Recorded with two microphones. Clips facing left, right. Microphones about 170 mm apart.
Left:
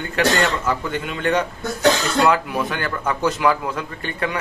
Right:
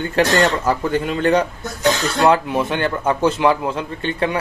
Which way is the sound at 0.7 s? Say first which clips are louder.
Right 5 dB; 35° right (ahead or behind).